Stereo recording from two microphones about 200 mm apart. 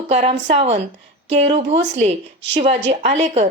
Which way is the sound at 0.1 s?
35° right (ahead or behind).